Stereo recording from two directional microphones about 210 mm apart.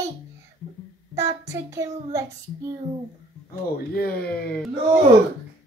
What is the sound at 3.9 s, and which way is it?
Speech, 50° left (ahead or behind).